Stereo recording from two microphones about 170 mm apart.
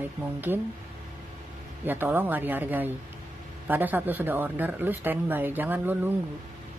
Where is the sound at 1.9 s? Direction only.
10° right (ahead or behind).